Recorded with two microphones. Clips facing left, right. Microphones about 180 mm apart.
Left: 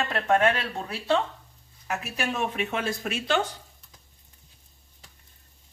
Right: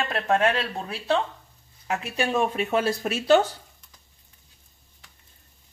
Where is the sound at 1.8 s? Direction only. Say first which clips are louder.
Right 4 dB; 30° right (ahead or behind).